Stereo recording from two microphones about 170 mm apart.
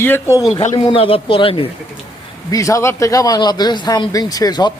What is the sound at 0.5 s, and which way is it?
Speech, 35° left (ahead or behind).